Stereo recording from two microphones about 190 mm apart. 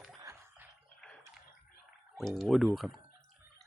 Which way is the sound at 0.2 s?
15° right (ahead or behind).